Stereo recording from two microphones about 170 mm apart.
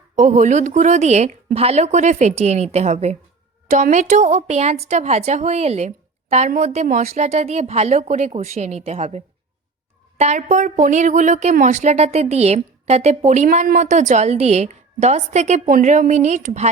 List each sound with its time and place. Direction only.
0.2 s a woman's voice: 45° right (ahead or behind)